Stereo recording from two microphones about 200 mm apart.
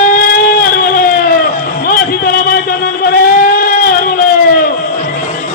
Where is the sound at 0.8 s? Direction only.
45° left (ahead or behind).